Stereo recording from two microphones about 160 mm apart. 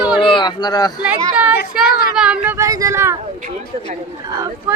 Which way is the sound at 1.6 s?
80° left.